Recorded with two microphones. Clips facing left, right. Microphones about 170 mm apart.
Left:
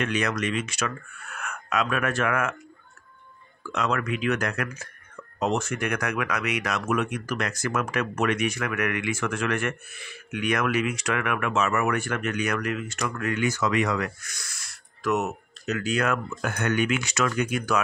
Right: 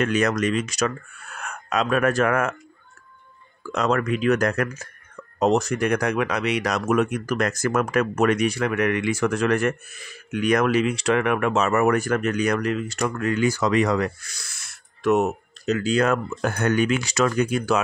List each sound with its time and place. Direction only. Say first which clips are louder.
0.0 s speech: right 5 dB; 40° right (ahead or behind)
3.6 s speech: right 5 dB; 40° right (ahead or behind)